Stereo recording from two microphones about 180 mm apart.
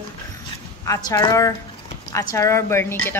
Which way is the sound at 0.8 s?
20° left (ahead or behind).